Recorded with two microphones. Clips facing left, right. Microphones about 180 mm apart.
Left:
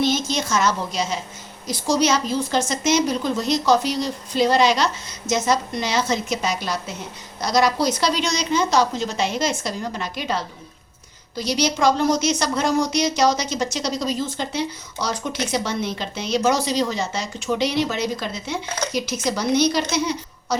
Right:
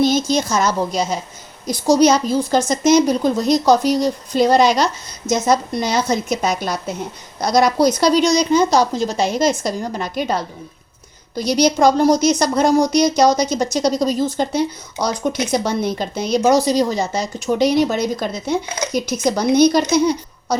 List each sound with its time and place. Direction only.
0.0 s a woman's voice: 40° right (ahead or behind)
19.5 s a woman's voice: 45° right (ahead or behind)